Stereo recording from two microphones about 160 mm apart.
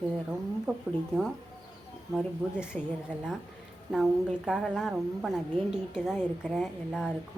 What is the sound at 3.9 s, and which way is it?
A woman's voice, 5° right (ahead or behind).